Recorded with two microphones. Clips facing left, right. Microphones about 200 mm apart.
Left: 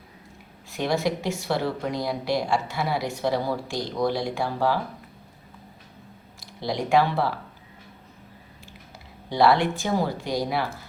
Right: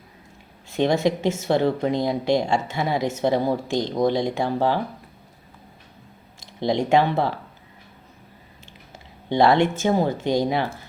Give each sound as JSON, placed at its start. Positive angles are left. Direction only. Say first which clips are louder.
{"t": 0.7, "sound": "speech", "louder": "right 5 dB", "side_deg": -25}
{"t": 6.4, "sound": "speech", "louder": "right 6 dB", "side_deg": -25}
{"t": 9.3, "sound": "speech", "louder": "right 3 dB", "side_deg": -25}